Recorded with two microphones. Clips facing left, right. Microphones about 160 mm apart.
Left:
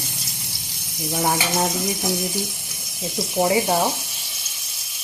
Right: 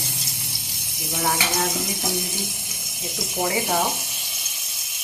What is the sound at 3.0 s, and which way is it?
Speech, 20° left (ahead or behind).